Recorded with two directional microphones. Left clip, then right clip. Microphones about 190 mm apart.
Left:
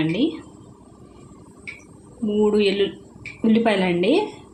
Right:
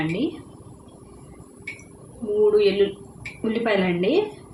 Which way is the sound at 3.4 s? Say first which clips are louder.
Left 3 dB; 40° left (ahead or behind).